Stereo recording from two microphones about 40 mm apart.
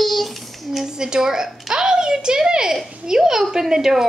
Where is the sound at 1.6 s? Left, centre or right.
Centre.